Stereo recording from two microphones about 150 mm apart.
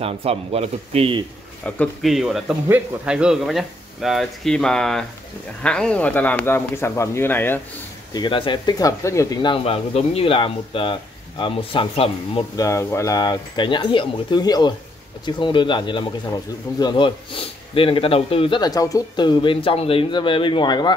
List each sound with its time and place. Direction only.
0.0 s speech: 40° right (ahead or behind)
1.6 s speech: 5° left (ahead or behind)
8.1 s speech: 30° left (ahead or behind)
12.5 s speech: 20° left (ahead or behind); by 18.6 s 40° left (ahead or behind)
18.6 s speech: 25° left (ahead or behind)